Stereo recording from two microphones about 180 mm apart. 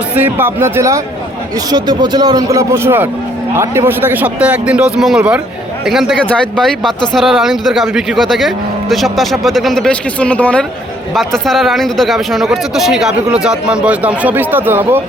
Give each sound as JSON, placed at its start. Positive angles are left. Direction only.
{"t": 0.2, "sound": "a man's voice", "side_deg": -10}